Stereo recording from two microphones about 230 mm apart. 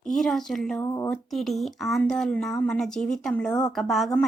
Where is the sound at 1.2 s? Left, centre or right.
Centre.